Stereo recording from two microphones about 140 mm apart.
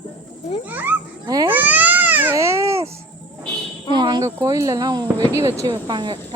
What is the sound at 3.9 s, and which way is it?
Speech, 30° right (ahead or behind).